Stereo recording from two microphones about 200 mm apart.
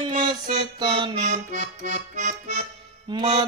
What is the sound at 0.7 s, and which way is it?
Music, 25° right (ahead or behind).